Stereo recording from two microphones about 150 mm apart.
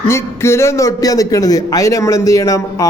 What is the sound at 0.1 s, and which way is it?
A man's voice, 15° left (ahead or behind).